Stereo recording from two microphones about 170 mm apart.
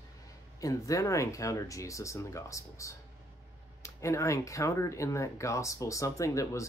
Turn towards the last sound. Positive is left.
turn(degrees=20)  # may be behind; listen again after turning